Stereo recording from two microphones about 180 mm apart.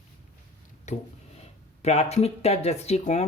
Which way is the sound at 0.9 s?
40° left (ahead or behind).